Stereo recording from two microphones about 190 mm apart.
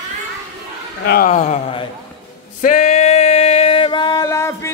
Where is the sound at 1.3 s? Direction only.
40° left (ahead or behind).